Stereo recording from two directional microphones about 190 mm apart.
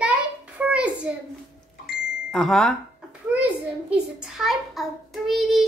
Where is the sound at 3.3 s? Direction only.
5° right (ahead or behind).